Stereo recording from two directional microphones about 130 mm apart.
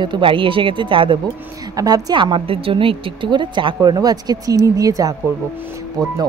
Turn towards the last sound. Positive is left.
turn(degrees=-30)  # may be behind; listen again after turning